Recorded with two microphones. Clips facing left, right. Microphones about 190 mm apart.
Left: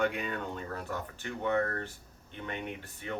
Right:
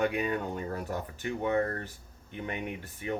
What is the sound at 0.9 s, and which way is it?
Speech, 15° right (ahead or behind).